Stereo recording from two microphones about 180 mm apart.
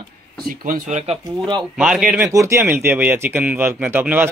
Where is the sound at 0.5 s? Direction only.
45° right (ahead or behind).